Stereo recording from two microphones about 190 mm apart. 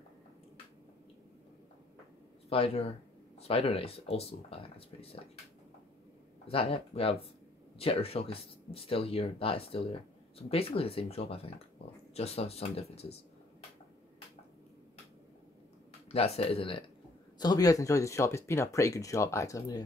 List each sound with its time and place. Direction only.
2.5 s speech: 30° left (ahead or behind)
6.4 s speech: 30° left (ahead or behind)
16.1 s speech: 30° left (ahead or behind); by 19.8 s 15° left (ahead or behind)